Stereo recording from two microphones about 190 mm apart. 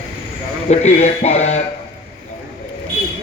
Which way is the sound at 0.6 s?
35° left (ahead or behind).